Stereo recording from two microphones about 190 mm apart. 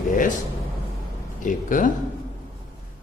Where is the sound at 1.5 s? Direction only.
45° left (ahead or behind).